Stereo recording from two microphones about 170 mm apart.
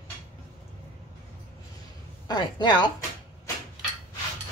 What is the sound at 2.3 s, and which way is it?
Speech, 25° left (ahead or behind).